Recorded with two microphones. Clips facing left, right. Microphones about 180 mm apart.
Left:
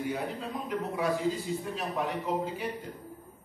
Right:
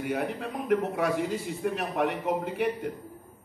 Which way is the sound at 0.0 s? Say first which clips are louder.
Right 3 dB; 65° right (ahead or behind).